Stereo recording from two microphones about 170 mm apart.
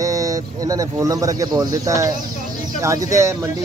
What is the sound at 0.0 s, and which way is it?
Speech, 20° right (ahead or behind).